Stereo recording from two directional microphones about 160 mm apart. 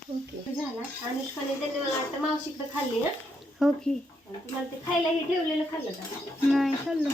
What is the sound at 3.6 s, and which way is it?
Speech, centre (ahead or behind).